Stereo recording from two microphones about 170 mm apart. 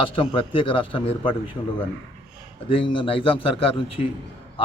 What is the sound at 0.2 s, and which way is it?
A man's voice, 30° left (ahead or behind).